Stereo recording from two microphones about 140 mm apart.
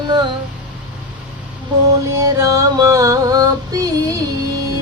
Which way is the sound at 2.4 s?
25° right (ahead or behind).